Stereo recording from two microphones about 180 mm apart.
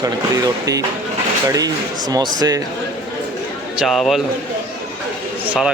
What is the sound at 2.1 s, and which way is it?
Speech, 20° right (ahead or behind).